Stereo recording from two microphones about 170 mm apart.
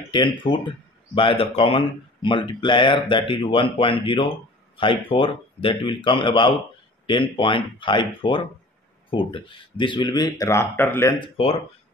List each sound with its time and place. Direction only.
0.1 s speech: 30° left (ahead or behind)
11.1 s speech: 30° left (ahead or behind)